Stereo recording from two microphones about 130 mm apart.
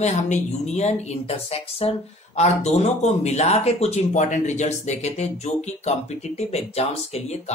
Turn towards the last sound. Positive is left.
turn(degrees=55)  # may be behind; listen again after turning